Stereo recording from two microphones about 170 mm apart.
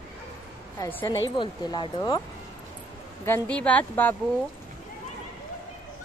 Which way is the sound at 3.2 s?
10° left (ahead or behind).